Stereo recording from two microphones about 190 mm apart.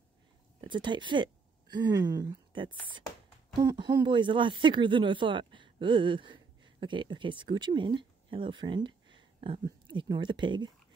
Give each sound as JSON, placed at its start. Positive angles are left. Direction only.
{"t": 0.6, "sound": "speech", "side_deg": -25}